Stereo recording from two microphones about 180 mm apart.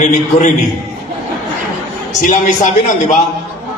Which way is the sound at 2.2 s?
45° left (ahead or behind).